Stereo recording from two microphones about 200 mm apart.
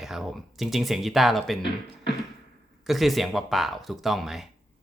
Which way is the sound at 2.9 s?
Centre (ahead or behind).